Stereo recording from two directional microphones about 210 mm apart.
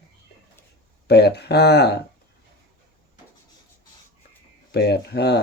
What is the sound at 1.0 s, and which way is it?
Speech, 50° left (ahead or behind).